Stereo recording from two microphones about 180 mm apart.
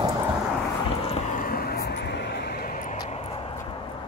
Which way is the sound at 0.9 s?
30° left (ahead or behind).